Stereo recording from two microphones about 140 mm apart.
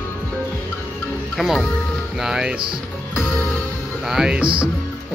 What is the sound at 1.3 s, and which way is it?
Music, centre (ahead or behind).